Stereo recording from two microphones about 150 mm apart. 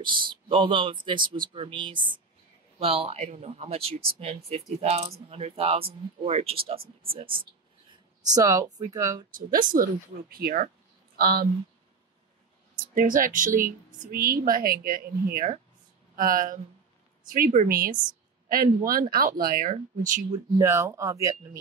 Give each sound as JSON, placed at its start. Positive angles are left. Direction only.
{"t": 0.0, "sound": "speech", "side_deg": -35}
{"t": 8.3, "sound": "speech", "side_deg": -25}
{"t": 9.3, "sound": "speech", "side_deg": -65}
{"t": 10.3, "sound": "speech", "side_deg": -80}
{"t": 11.1, "sound": "speech", "side_deg": -90}
{"t": 12.7, "sound": "speech", "side_deg": -65}
{"t": 19.7, "sound": "speech", "side_deg": -60}
{"t": 20.2, "sound": "speech", "side_deg": -25}